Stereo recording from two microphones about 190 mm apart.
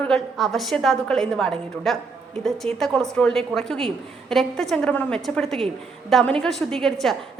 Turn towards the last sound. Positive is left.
turn(degrees=0)  # may be behind; listen again after turning